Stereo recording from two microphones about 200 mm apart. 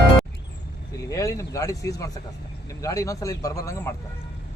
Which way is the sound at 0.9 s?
15° left (ahead or behind).